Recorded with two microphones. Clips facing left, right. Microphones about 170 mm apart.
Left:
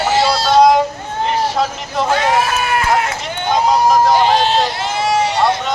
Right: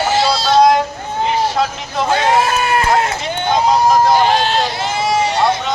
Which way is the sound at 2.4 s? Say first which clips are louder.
Right 1 dB; 30° right (ahead or behind).